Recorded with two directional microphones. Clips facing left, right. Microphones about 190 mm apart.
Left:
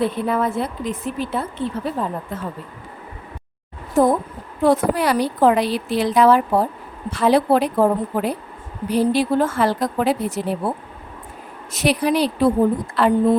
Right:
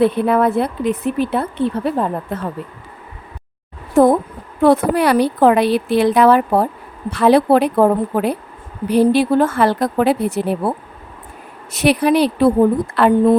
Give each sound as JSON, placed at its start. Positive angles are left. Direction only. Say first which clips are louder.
{"t": 0.0, "sound": "a woman's voice", "louder": "right 6 dB", "side_deg": -65}
{"t": 3.9, "sound": "a woman's voice", "louder": "right 5 dB", "side_deg": -65}
{"t": 11.7, "sound": "a woman's voice", "louder": "right 5 dB", "side_deg": -65}